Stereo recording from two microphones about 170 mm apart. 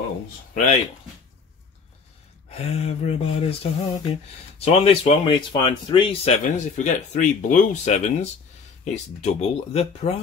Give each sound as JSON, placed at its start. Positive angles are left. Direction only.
{"t": 2.5, "sound": "speech", "side_deg": 35}
{"t": 6.4, "sound": "speech", "side_deg": 50}